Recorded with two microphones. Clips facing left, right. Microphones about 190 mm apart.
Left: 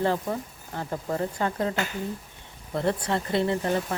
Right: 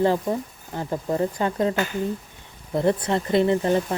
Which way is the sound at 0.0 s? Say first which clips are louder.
Right 5 dB; 15° right (ahead or behind).